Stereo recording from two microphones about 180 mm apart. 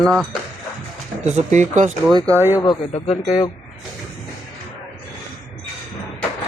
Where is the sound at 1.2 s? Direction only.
40° right (ahead or behind).